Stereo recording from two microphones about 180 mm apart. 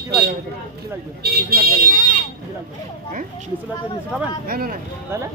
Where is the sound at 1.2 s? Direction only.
60° right (ahead or behind).